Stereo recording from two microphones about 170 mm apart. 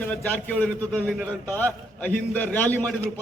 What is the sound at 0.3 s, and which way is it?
A man's voice, 5° left (ahead or behind).